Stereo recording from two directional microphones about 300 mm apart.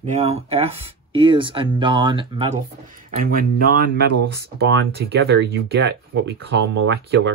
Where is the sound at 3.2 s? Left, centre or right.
Right.